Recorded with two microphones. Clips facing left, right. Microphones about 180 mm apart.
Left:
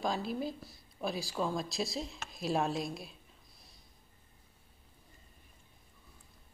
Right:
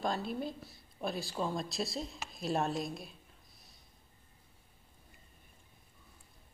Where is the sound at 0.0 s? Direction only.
Centre (ahead or behind).